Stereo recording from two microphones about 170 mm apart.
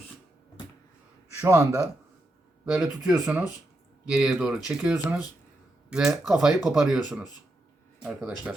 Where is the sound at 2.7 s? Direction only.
5° right (ahead or behind).